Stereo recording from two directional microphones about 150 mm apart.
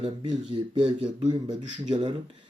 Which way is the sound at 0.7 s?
35° right (ahead or behind).